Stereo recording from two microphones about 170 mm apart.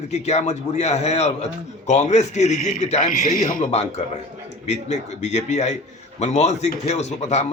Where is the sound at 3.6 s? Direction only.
30° left (ahead or behind).